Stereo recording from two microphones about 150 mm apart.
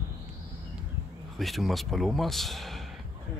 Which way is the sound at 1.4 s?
Centre (ahead or behind).